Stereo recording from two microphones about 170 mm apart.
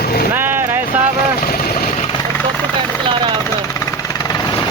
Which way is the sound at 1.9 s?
40° left (ahead or behind).